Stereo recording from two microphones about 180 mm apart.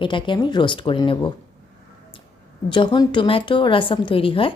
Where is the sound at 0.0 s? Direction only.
25° left (ahead or behind).